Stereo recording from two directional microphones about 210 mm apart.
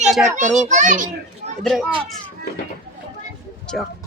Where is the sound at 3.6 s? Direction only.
Centre (ahead or behind).